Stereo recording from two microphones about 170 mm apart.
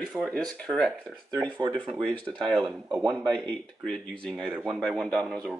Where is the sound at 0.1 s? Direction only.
Centre (ahead or behind).